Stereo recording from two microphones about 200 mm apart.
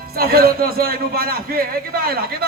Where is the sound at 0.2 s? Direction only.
50° right (ahead or behind).